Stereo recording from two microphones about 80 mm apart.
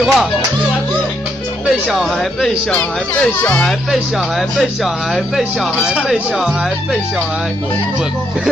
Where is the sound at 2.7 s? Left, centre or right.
Centre.